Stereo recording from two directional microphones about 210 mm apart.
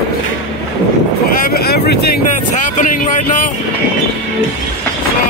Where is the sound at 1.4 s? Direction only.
45° left (ahead or behind).